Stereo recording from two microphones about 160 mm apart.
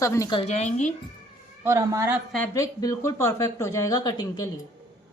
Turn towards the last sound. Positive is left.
turn(degrees=25)  # may be behind; listen again after turning